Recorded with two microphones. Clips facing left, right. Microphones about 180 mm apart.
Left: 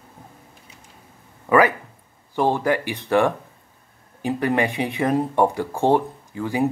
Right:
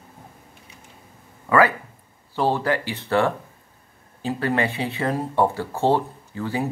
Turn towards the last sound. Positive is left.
turn(degrees=15)  # may be behind; listen again after turning